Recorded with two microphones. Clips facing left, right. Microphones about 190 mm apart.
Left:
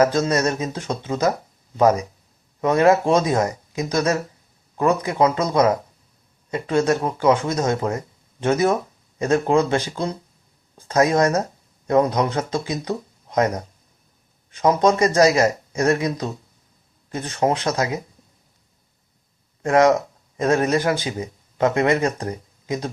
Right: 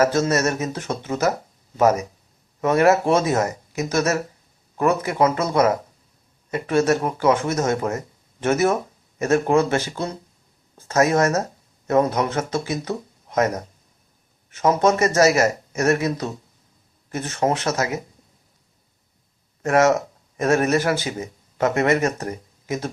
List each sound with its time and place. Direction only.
0.0 s speech: 15° left (ahead or behind)
2.6 s speech: 15° left (ahead or behind)
4.8 s speech: 15° left (ahead or behind)
19.6 s a sound: 15° left (ahead or behind)
20.4 s speech: 25° left (ahead or behind)